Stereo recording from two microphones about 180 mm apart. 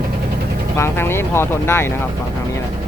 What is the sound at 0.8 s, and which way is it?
Speech, 15° left (ahead or behind).